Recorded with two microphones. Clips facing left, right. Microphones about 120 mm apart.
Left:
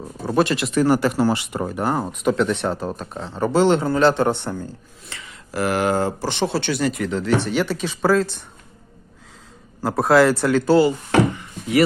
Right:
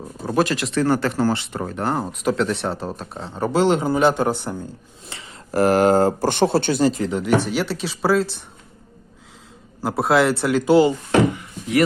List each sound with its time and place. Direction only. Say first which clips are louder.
0.3 s a man's voice: left 1 dB; centre (ahead or behind)
5.0 s speech: even; 25° right (ahead or behind)
5.3 s speech: right 5 dB; 45° right (ahead or behind); by 7.2 s 30° right (ahead or behind)
7.4 s speech: left 2 dB; centre (ahead or behind)
9.8 s speech: left 2 dB; 5° right (ahead or behind)
10.7 s speech: right 1 dB; 20° right (ahead or behind)